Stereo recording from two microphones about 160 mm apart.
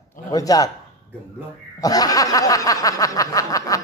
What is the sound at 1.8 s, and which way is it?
Snicker, 25° left (ahead or behind).